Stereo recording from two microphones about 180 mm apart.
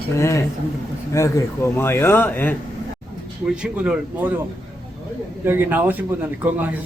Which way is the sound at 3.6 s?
5° right (ahead or behind).